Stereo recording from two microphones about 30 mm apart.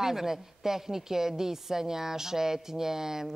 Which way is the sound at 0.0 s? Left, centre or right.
Centre.